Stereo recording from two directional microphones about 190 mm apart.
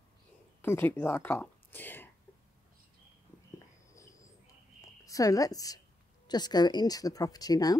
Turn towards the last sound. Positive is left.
turn(degrees=20)  # may be behind; listen again after turning